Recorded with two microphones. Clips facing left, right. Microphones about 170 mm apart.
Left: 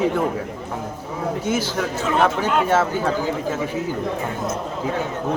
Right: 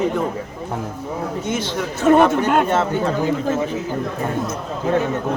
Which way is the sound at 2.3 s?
55° right (ahead or behind).